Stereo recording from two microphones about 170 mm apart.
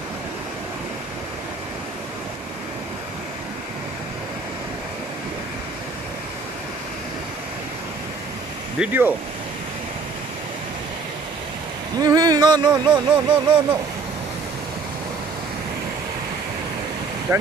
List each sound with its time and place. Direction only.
8.7 s speech: 10° right (ahead or behind)
12.0 s a sound: 20° right (ahead or behind)
17.3 s speech: 15° right (ahead or behind)